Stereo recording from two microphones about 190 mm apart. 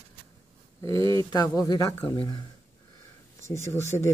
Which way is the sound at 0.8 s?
15° left (ahead or behind).